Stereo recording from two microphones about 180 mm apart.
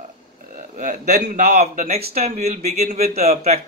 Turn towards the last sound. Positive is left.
turn(degrees=-35)  # may be behind; listen again after turning